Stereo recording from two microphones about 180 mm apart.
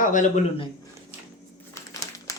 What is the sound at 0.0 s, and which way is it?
Speech, 45° left (ahead or behind).